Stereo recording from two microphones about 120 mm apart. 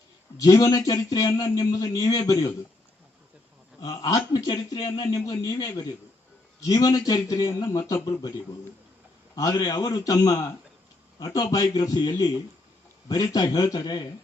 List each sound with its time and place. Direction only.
0.3 s a man's voice: 35° left (ahead or behind)
3.9 s a man's voice: 30° left (ahead or behind)
4.5 s a man's voice: 40° left (ahead or behind)
9.3 s a man's voice: 30° left (ahead or behind)